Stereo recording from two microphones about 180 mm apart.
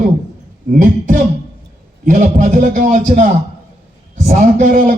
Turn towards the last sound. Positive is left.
turn(degrees=-45)  # may be behind; listen again after turning